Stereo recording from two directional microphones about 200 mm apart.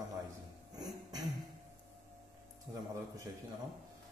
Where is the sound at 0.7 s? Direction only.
20° right (ahead or behind).